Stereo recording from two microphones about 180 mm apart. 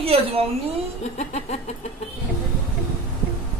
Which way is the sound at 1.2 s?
40° left (ahead or behind).